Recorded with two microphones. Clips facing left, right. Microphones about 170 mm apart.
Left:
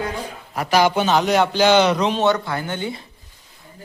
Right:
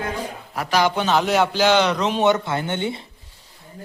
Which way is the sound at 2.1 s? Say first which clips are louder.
Right 1 dB; 20° right (ahead or behind).